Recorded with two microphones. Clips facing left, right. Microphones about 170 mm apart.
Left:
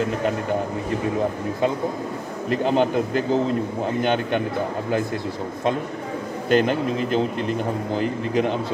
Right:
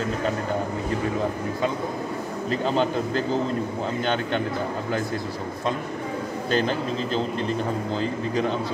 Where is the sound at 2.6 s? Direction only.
15° left (ahead or behind).